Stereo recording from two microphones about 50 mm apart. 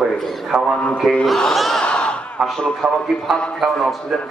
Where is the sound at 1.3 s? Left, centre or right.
Centre.